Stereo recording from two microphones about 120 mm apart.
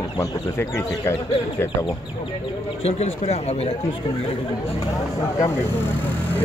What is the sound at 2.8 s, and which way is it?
Speech, 60° left (ahead or behind).